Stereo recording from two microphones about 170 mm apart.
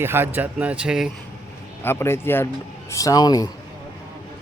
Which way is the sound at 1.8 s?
15° left (ahead or behind).